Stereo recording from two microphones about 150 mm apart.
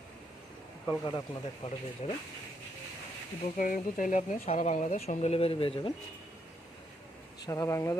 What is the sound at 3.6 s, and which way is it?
Speech, 65° left (ahead or behind).